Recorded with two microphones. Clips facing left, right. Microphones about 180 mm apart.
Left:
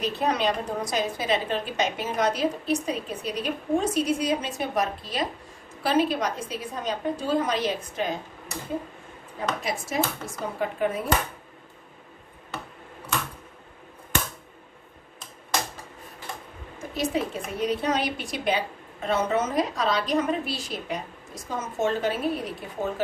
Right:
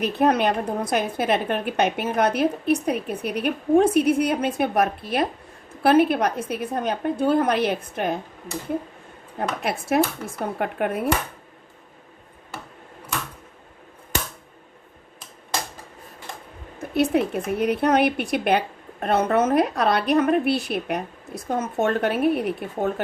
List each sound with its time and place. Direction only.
0.0 s speech: 55° right (ahead or behind)
9.4 s speech: 60° right (ahead or behind)
16.7 s speech: 60° right (ahead or behind)